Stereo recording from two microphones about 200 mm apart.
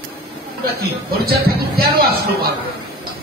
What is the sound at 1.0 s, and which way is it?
Speech, 50° right (ahead or behind).